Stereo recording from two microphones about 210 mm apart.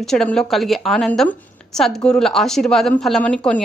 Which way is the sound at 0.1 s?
Centre (ahead or behind).